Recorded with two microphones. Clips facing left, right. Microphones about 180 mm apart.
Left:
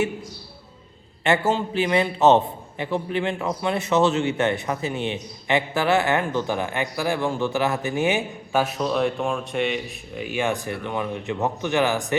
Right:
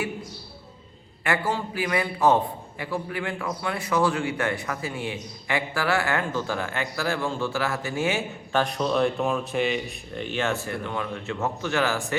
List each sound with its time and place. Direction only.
1.2 s a man's voice: 25° left (ahead or behind)
8.6 s speech: centre (ahead or behind); by 12.1 s 20° left (ahead or behind)